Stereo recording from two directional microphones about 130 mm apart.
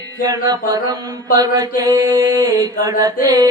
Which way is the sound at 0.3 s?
30° right (ahead or behind).